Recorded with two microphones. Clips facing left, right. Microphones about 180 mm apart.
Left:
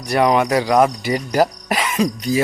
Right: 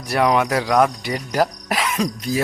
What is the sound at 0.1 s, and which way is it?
Speech, centre (ahead or behind).